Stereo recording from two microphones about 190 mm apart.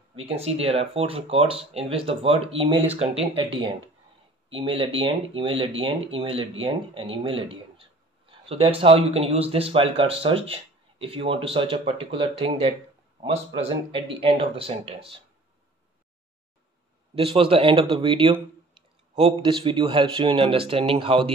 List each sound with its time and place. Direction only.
0.1 s speech: 30° right (ahead or behind)
17.1 s speech: 30° right (ahead or behind)